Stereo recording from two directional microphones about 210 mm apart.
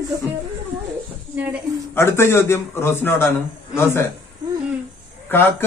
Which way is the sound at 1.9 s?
10° left (ahead or behind).